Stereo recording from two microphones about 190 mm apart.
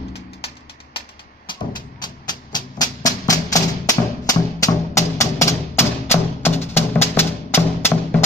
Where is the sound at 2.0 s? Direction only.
20° left (ahead or behind).